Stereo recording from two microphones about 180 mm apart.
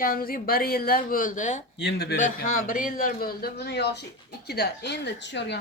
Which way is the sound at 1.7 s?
70° left (ahead or behind).